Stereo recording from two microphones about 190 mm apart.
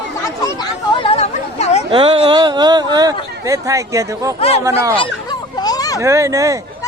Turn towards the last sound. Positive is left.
turn(degrees=-15)  # may be behind; listen again after turning